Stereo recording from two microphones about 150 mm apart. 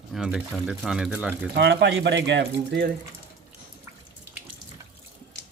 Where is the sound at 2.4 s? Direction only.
90° right.